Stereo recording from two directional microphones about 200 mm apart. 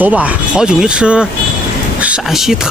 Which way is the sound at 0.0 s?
5° right (ahead or behind).